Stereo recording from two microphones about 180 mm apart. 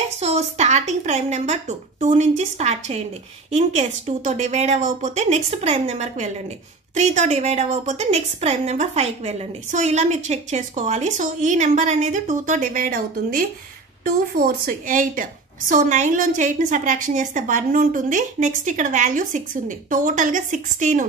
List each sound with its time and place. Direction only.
0.2 s a woman's voice: 35° right (ahead or behind)